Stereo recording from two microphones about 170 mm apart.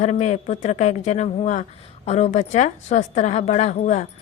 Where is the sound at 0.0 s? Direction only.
45° left (ahead or behind).